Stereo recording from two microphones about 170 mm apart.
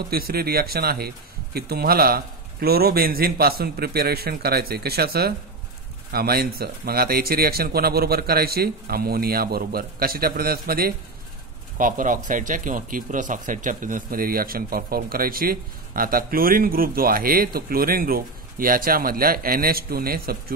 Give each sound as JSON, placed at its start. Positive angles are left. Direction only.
{"t": 0.1, "sound": "speech", "side_deg": -65}
{"t": 11.8, "sound": "speech", "side_deg": -50}